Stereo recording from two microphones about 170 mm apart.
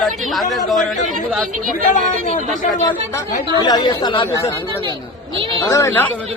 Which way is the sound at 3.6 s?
25° left (ahead or behind).